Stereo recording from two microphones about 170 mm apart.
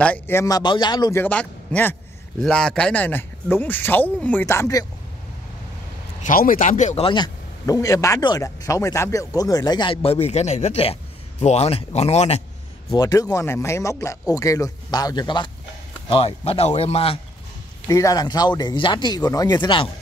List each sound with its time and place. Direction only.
0.0 s speech: 10° left (ahead or behind)
1.2 s speech: 5° left (ahead or behind)
6.2 s speech: 55° left (ahead or behind)
7.1 s speech: 25° left (ahead or behind); by 12.4 s 40° left (ahead or behind)
12.9 s speech: 20° left (ahead or behind)
17.8 s speech: 20° left (ahead or behind)